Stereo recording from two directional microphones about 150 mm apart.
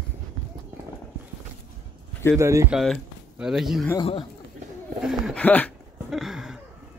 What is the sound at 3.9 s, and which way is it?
Speech, 35° left (ahead or behind).